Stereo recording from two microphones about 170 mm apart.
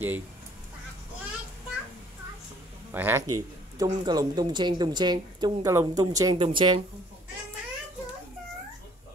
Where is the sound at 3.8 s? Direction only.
25° right (ahead or behind).